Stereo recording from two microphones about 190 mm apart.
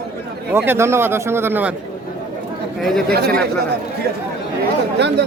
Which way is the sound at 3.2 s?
55° right (ahead or behind).